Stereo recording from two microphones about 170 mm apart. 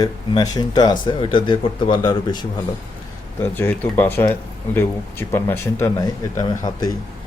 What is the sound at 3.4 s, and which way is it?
Speech, 10° left (ahead or behind).